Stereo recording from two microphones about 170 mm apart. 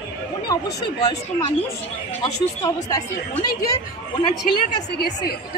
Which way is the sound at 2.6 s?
20° left (ahead or behind).